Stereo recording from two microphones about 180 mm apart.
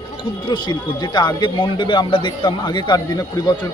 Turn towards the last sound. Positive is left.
turn(degrees=20)  # may be behind; listen again after turning